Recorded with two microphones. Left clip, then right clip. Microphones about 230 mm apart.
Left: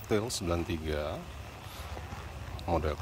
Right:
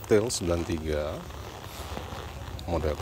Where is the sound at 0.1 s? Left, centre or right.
Centre.